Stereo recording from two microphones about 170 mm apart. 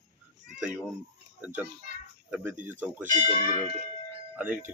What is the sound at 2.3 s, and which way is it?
Speech, 10° right (ahead or behind).